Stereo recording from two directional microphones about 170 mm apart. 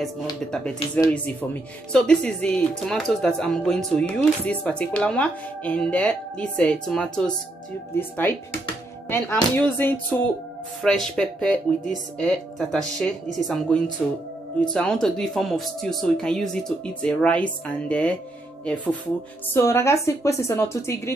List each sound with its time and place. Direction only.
0.9 s a woman's voice: 10° left (ahead or behind)
19.5 s a woman's voice: 15° left (ahead or behind)